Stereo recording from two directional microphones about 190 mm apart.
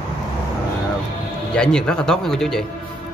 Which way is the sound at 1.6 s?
5° left (ahead or behind).